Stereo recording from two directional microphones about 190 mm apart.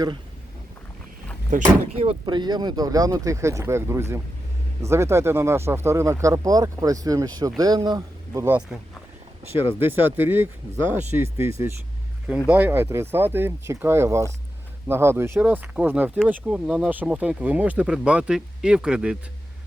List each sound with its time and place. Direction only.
1.5 s speech: 45° right (ahead or behind)
2.0 s speech: 25° right (ahead or behind); by 19.1 s 5° right (ahead or behind)